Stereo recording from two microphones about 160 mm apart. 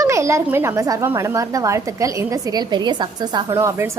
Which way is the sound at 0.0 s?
20° right (ahead or behind).